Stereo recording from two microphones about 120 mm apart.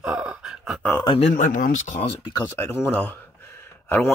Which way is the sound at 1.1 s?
90° left.